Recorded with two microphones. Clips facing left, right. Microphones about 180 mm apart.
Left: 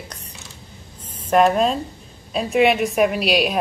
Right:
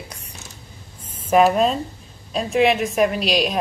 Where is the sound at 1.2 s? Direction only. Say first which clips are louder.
Even; 5° right (ahead or behind).